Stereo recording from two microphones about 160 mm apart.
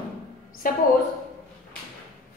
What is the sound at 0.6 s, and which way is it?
Speech, 60° left (ahead or behind).